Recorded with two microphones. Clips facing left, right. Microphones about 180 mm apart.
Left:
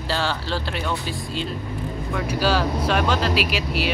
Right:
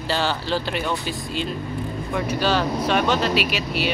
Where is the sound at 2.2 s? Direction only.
5° left (ahead or behind).